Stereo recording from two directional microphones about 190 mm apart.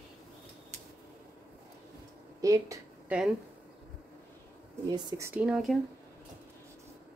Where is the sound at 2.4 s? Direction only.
15° right (ahead or behind).